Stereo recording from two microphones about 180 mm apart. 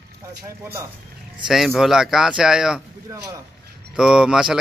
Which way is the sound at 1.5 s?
Centre (ahead or behind).